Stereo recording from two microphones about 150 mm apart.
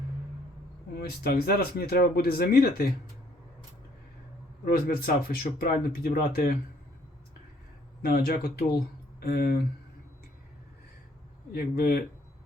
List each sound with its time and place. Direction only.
0.9 s speech: 90° left
4.6 s speech: 80° left
8.0 s speech: 90° left
11.8 s speech: 85° left